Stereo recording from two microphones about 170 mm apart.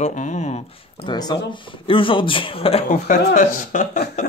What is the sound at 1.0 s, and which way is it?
Speech, 25° left (ahead or behind).